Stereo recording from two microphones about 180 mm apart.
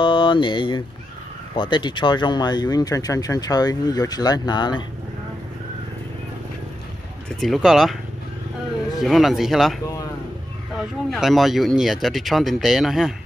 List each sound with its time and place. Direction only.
0.0 s speech: 25° left (ahead or behind)
7.3 s speech: centre (ahead or behind)
9.0 s speech: centre (ahead or behind)
10.8 s speech: centre (ahead or behind)